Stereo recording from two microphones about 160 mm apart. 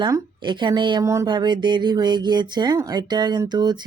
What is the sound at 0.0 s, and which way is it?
A woman's voice, 30° right (ahead or behind).